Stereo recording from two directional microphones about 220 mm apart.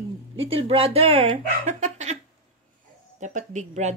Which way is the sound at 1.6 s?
30° right (ahead or behind).